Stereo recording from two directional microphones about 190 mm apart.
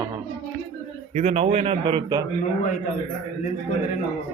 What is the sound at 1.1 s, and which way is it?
A man's voice, 35° right (ahead or behind).